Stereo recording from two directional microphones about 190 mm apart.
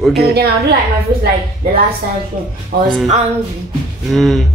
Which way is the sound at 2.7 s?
50° right (ahead or behind).